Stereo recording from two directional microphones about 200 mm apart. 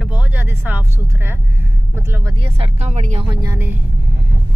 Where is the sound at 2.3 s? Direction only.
30° right (ahead or behind).